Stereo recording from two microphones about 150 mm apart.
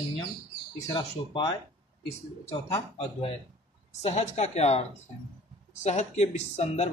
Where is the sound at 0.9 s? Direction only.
30° left (ahead or behind).